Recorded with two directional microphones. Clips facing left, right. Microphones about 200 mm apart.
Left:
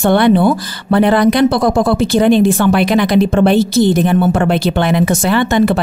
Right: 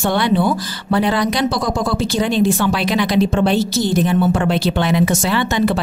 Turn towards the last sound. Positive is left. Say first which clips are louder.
# left 5 dB
turn(degrees=55)  # may be behind; listen again after turning